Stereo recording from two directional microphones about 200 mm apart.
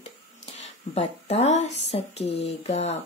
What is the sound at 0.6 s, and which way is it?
Speech, 30° left (ahead or behind).